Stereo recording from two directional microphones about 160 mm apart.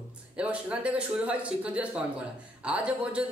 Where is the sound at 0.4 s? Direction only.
10° right (ahead or behind).